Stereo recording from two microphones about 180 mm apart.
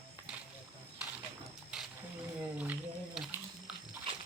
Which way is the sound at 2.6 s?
5° right (ahead or behind).